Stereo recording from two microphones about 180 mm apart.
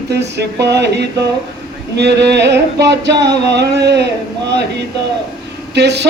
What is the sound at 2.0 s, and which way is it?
Music, 70° right (ahead or behind).